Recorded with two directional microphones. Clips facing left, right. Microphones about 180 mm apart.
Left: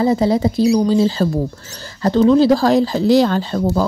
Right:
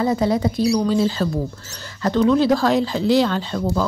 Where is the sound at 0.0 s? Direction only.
30° left (ahead or behind).